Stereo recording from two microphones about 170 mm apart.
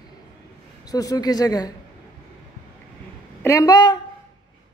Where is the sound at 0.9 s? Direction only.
20° left (ahead or behind).